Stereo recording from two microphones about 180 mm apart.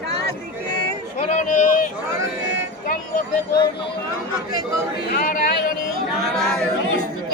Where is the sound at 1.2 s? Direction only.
40° left (ahead or behind).